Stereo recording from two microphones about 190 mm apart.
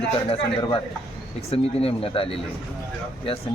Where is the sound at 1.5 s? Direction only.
30° left (ahead or behind).